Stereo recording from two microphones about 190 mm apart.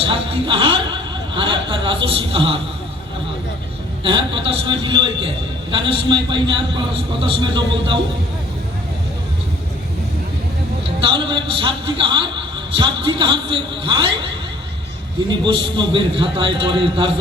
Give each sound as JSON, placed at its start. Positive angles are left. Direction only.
{"t": 0.0, "sound": "a man's voice", "side_deg": -25}
{"t": 4.0, "sound": "a man's voice", "side_deg": -25}
{"t": 11.0, "sound": "a man's voice", "side_deg": -25}
{"t": 15.3, "sound": "a man's voice", "side_deg": -25}